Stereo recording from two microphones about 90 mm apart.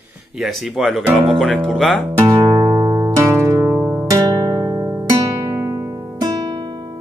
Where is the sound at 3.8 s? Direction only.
15° right (ahead or behind).